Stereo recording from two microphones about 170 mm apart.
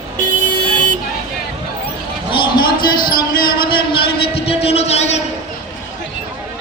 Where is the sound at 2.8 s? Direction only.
60° left (ahead or behind).